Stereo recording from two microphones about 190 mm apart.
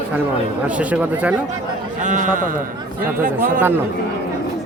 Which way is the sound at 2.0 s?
40° right (ahead or behind).